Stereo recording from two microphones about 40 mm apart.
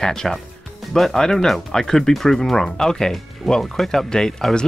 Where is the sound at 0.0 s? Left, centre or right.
Centre.